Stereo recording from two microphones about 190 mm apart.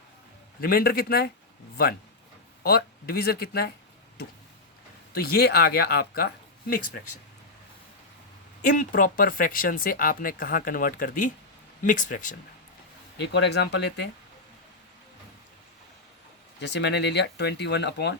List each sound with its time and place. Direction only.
0.6 s speech: 50° left (ahead or behind)
2.6 s speech: 55° left (ahead or behind)
5.1 s speech: 55° left (ahead or behind)
8.6 s speech: 45° left (ahead or behind)
13.2 s speech: 65° left (ahead or behind)
16.6 s speech: 65° left (ahead or behind)